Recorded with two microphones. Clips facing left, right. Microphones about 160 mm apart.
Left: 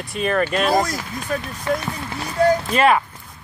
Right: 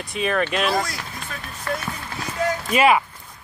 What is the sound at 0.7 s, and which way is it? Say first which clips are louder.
Speech: left 4 dB; 45° left (ahead or behind).